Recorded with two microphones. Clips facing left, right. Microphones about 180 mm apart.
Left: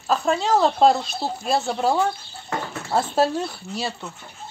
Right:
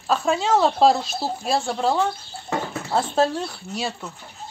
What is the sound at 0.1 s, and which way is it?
Speech, centre (ahead or behind).